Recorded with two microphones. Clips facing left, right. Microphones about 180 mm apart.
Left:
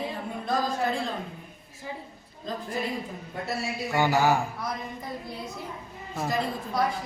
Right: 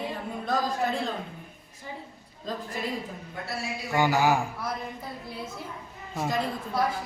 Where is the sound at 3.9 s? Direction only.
15° right (ahead or behind).